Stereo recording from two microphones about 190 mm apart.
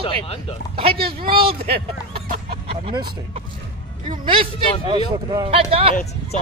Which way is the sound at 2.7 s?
30° right (ahead or behind).